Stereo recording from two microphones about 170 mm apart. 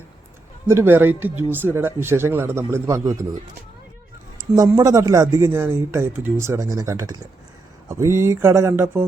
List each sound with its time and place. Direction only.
0.7 s speech: 15° right (ahead or behind)
4.5 s speech: 20° right (ahead or behind)